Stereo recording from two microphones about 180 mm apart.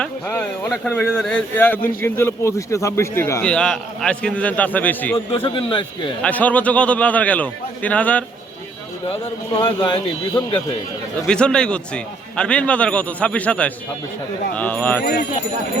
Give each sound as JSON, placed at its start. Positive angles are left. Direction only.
{"t": 0.0, "sound": "a man's voice", "side_deg": 10}
{"t": 5.3, "sound": "a man's voice", "side_deg": 30}
{"t": 6.2, "sound": "a man's voice", "side_deg": 10}
{"t": 9.6, "sound": "a man's voice", "side_deg": 25}
{"t": 11.3, "sound": "a man's voice", "side_deg": 5}